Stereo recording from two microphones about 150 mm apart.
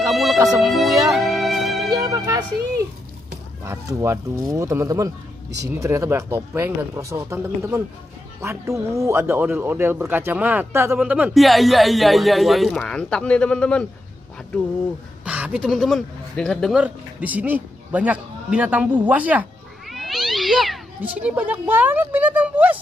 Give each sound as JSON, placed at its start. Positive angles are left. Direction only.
{"t": 0.1, "sound": "music", "side_deg": 0}
{"t": 0.4, "sound": "speech", "side_deg": -25}
{"t": 0.7, "sound": "music", "side_deg": 0}
{"t": 1.9, "sound": "music", "side_deg": -20}
{"t": 3.6, "sound": "a man's voice", "side_deg": -20}
{"t": 15.2, "sound": "speech", "side_deg": -10}
{"t": 16.7, "sound": "a man's voice", "side_deg": -10}
{"t": 19.9, "sound": "cat", "side_deg": 0}
{"t": 21.2, "sound": "a man's voice", "side_deg": -10}